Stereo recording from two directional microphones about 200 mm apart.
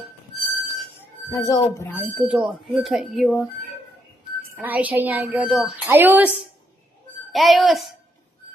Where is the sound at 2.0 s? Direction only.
5° right (ahead or behind).